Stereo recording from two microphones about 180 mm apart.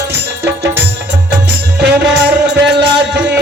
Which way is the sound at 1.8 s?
70° right (ahead or behind).